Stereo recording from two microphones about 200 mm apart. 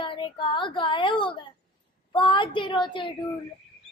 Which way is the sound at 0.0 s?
25° left (ahead or behind).